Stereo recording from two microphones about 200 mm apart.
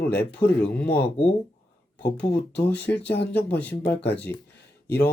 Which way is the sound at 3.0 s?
60° left (ahead or behind).